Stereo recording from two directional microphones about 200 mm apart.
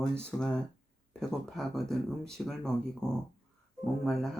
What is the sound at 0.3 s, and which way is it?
Speech, 5° left (ahead or behind).